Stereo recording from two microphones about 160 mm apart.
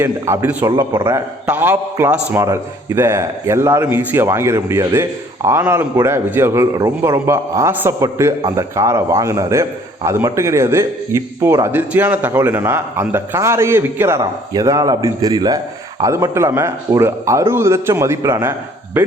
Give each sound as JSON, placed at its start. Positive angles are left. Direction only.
{"t": 0.0, "sound": "speech", "side_deg": -15}
{"t": 1.5, "sound": "a man's voice", "side_deg": -10}